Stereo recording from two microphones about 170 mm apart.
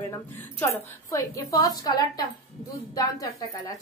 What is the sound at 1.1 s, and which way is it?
A woman's voice, 20° left (ahead or behind).